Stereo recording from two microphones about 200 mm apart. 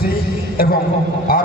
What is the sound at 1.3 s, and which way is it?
Speech, 50° left (ahead or behind).